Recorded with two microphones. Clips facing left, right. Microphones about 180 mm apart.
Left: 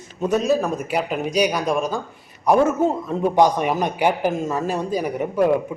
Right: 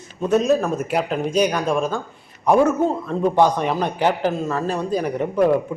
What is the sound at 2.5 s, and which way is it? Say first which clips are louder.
A man's voice: right 1 dB; 5° left (ahead or behind).